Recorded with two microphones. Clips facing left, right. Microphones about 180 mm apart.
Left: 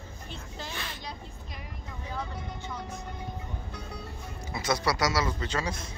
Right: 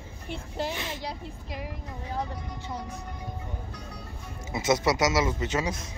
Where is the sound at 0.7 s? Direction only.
20° right (ahead or behind).